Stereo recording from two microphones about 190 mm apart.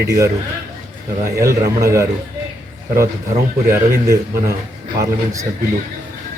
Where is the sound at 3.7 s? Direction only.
15° right (ahead or behind).